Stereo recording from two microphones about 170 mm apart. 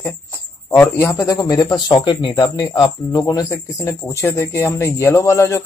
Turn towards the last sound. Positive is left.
turn(degrees=15)  # may be behind; listen again after turning